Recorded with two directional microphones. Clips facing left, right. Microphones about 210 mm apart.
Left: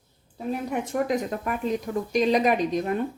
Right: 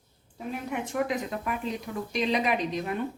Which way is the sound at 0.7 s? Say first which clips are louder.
Left 3 dB; 40° left (ahead or behind).